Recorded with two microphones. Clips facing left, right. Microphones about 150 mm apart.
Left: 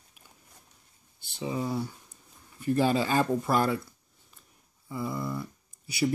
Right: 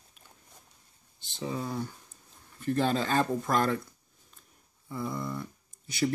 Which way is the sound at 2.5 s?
10° left (ahead or behind).